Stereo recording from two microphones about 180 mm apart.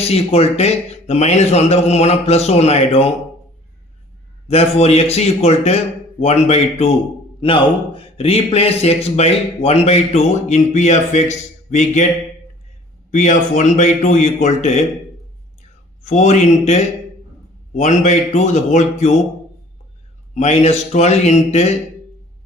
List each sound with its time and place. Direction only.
0.0 s a man's voice: 35° left (ahead or behind)
4.4 s a man's voice: 35° left (ahead or behind)
13.1 s a man's voice: 40° left (ahead or behind)
16.0 s a man's voice: 40° left (ahead or behind)
20.3 s a man's voice: 40° left (ahead or behind)